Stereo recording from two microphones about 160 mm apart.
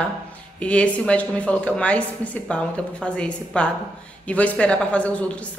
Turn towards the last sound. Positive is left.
turn(degrees=10)  # may be behind; listen again after turning